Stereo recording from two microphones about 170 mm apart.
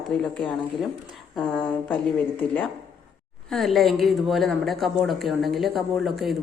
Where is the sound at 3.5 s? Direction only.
Centre (ahead or behind).